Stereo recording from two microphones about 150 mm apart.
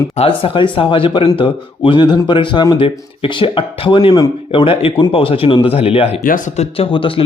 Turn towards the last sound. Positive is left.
turn(degrees=35)  # may be behind; listen again after turning